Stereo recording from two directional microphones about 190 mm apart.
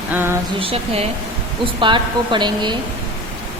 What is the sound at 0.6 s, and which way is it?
Speech, 30° right (ahead or behind).